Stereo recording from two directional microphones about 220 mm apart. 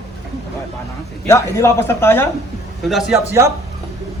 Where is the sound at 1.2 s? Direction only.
10° left (ahead or behind).